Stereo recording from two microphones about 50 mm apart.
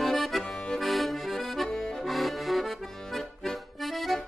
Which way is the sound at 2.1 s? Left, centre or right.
Centre.